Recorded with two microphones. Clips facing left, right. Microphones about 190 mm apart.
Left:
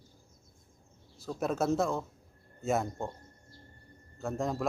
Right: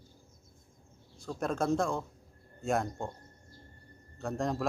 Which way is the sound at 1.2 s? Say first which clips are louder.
Left 1 dB; 5° left (ahead or behind).